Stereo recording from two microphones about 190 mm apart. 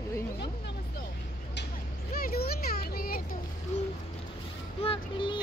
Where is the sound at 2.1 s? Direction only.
50° left (ahead or behind).